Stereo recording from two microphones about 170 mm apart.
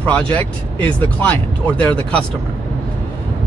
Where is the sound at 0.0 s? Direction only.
10° left (ahead or behind).